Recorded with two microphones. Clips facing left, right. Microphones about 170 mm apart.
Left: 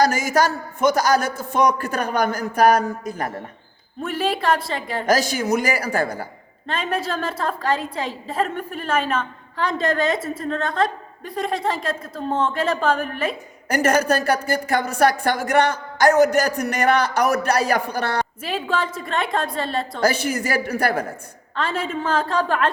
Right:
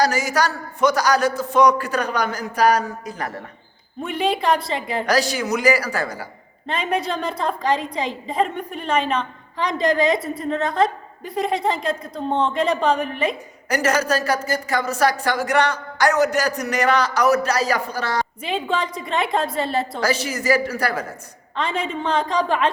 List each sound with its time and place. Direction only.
0.0 s a man's voice: 50° left (ahead or behind)
4.0 s a woman's voice: 5° left (ahead or behind)
5.0 s a man's voice: 50° left (ahead or behind)
6.7 s a woman's voice: centre (ahead or behind)
13.7 s a woman's voice: 55° left (ahead or behind)
18.4 s a woman's voice: 5° left (ahead or behind)
20.1 s a woman's voice: 55° left (ahead or behind)
21.6 s a woman's voice: 5° left (ahead or behind)